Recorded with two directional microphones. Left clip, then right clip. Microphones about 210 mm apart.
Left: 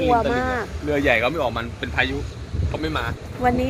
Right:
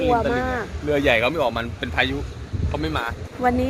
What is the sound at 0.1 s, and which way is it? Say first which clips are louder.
Speech: left 1 dB; centre (ahead or behind).